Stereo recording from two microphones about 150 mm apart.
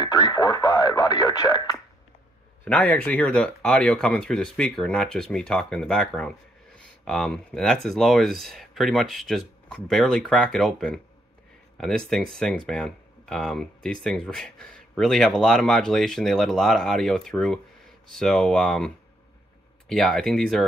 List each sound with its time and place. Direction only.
0.0 s speech: 25° left (ahead or behind)
2.6 s speech: 10° left (ahead or behind)
12.1 s speech: centre (ahead or behind)